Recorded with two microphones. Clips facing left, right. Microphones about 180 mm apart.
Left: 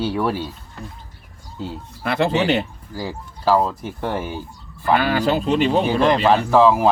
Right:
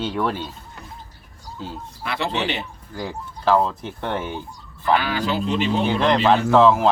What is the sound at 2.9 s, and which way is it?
Speech, 5° left (ahead or behind).